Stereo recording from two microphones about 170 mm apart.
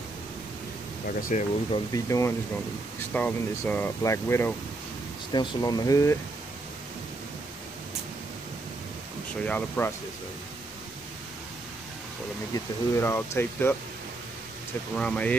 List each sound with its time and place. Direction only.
1.3 s speech: 45° left (ahead or behind)
1.9 s speech: 20° left (ahead or behind)
9.4 s speech: 10° left (ahead or behind)
12.5 s speech: 15° left (ahead or behind)
15.0 s speech: 5° left (ahead or behind)